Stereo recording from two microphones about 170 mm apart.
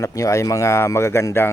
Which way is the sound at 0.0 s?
20° left (ahead or behind).